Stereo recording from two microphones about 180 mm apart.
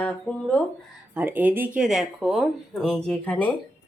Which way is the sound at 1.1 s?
10° right (ahead or behind).